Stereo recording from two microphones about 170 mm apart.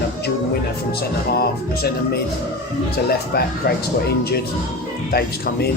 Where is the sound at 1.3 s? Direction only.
65° left (ahead or behind).